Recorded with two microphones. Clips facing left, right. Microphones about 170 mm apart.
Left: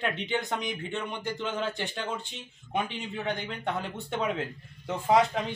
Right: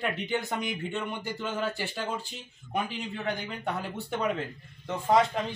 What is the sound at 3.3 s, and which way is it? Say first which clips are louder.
A woman's voice: left 1 dB; centre (ahead or behind).